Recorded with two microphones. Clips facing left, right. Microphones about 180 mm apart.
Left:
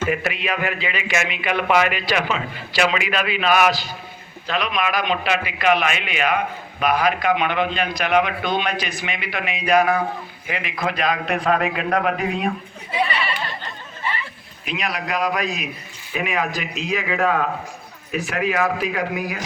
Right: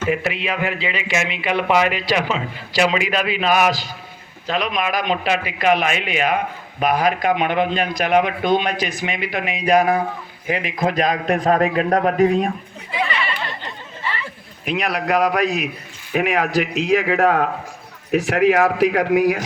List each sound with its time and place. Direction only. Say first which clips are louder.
0.1 s a man's voice: right 2 dB; 25° right (ahead or behind); by 12.5 s 45° right (ahead or behind)
14.6 s a man's voice: right 5 dB; 60° right (ahead or behind)
18.1 s speech: right 7 dB; 75° right (ahead or behind)